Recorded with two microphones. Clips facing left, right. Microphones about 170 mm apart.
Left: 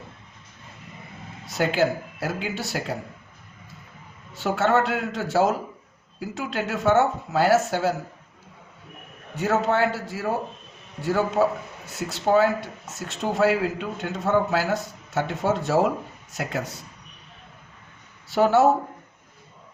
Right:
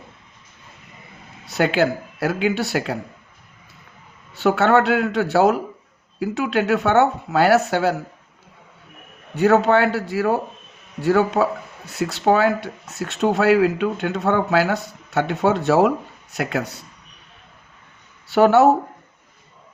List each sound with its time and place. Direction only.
1.5 s speech: 70° right (ahead or behind)
4.4 s speech: 70° right (ahead or behind)
9.3 s speech: 70° right (ahead or behind)
18.3 s speech: 70° right (ahead or behind)